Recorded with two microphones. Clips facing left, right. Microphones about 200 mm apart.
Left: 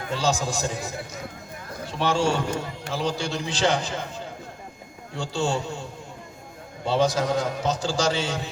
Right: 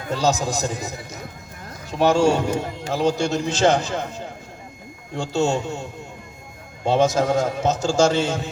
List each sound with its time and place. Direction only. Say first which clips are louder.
0.1 s a man's voice: right 4 dB; 40° right (ahead or behind)
5.1 s a man's voice: right 5 dB; 45° right (ahead or behind)
6.8 s a man's voice: right 4 dB; 45° right (ahead or behind)